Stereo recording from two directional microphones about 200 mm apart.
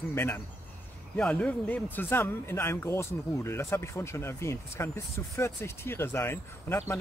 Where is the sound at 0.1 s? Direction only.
10° left (ahead or behind).